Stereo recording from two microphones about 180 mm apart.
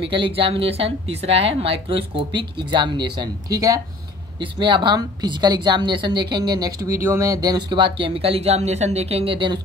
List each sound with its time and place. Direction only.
0.1 s a woman's voice: 30° right (ahead or behind)